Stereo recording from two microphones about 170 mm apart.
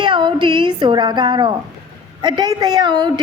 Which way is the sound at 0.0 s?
30° right (ahead or behind).